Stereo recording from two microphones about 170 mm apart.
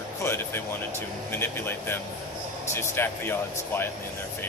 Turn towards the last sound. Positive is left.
turn(degrees=15)  # may be behind; listen again after turning